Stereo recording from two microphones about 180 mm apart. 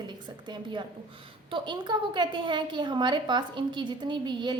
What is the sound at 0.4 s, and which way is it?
A woman's voice, 25° right (ahead or behind).